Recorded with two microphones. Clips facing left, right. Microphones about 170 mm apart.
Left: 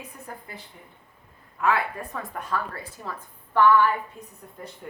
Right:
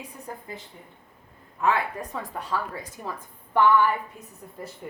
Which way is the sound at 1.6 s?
20° right (ahead or behind).